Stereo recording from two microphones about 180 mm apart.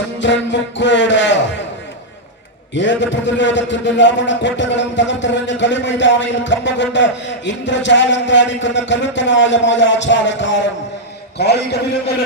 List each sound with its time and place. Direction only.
0.2 s music: 90° left
2.7 s a man's voice: 90° left
11.3 s a man's voice: 65° left (ahead or behind)